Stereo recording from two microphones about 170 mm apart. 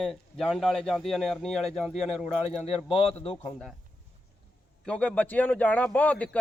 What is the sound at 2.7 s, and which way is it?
Speech, 30° left (ahead or behind).